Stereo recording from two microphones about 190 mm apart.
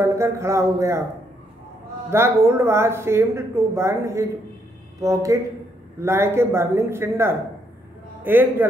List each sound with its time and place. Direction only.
0.0 s speech: 15° right (ahead or behind)
2.0 s a man's voice: 15° right (ahead or behind)